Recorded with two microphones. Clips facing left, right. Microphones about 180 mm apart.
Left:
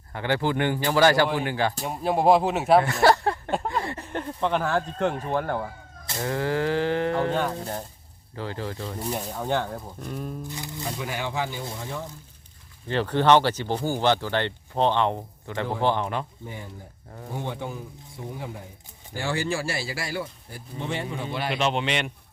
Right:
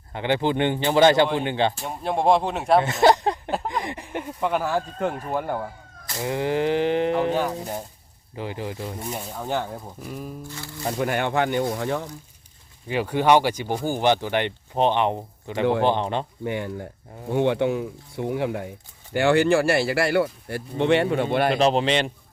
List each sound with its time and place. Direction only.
0.1 s speech: 20° right (ahead or behind)
1.8 s speech: centre (ahead or behind)
2.8 s a sound: 20° right (ahead or behind)
3.7 s speech: 15° right (ahead or behind)
6.1 s speech: 15° right (ahead or behind)
9.0 s speech: centre (ahead or behind)
10.5 s music: 20° left (ahead or behind)
10.8 s speech: 50° right (ahead or behind); by 12.1 s 70° right (ahead or behind)
12.9 s speech: 10° right (ahead or behind)
16.4 s speech: 75° right (ahead or behind); by 21.6 s 55° right (ahead or behind)
21.6 s a man's voice: 35° right (ahead or behind)